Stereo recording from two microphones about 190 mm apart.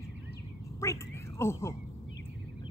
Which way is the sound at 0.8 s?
15° left (ahead or behind).